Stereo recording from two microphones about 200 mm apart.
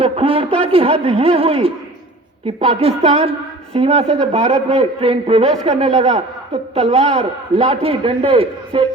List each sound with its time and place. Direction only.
0.0 s a woman's voice: 30° right (ahead or behind)